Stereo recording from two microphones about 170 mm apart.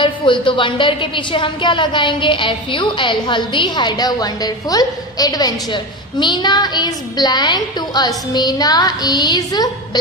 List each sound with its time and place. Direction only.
0.0 s a woman's voice: 30° left (ahead or behind)